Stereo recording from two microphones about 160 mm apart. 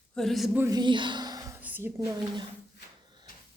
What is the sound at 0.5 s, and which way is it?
Speech, 15° right (ahead or behind).